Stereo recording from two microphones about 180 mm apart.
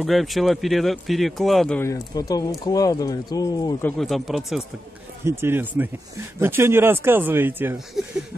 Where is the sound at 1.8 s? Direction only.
20° left (ahead or behind).